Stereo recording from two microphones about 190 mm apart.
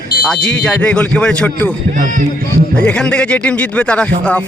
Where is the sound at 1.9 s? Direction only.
45° right (ahead or behind).